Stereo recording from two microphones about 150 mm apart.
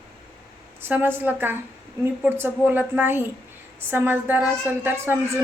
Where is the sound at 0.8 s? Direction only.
10° right (ahead or behind).